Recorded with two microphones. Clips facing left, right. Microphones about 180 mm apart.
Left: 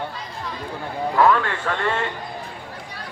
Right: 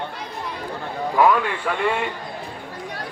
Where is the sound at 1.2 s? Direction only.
10° right (ahead or behind).